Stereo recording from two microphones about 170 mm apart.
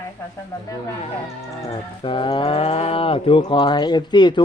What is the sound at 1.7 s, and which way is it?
Speech, 30° left (ahead or behind).